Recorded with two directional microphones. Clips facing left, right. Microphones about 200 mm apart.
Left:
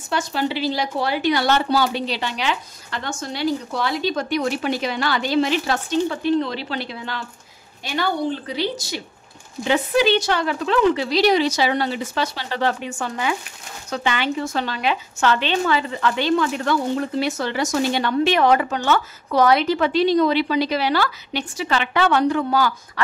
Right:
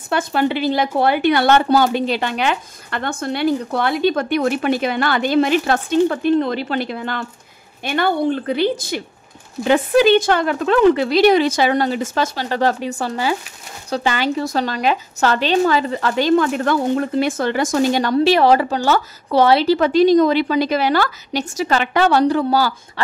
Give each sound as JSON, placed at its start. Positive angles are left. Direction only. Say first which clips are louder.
{"t": 0.1, "sound": "a woman's voice", "louder": "right 5 dB", "side_deg": -55}